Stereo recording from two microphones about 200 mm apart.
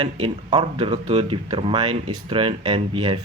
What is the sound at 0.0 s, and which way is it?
Speech, 25° right (ahead or behind).